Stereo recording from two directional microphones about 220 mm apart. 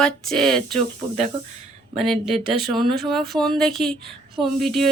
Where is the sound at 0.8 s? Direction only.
30° right (ahead or behind).